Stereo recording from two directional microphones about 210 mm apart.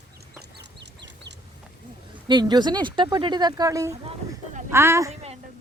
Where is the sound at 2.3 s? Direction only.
20° right (ahead or behind).